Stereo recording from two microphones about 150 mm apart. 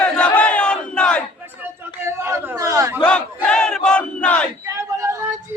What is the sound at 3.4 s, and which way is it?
Battle cry, 5° left (ahead or behind).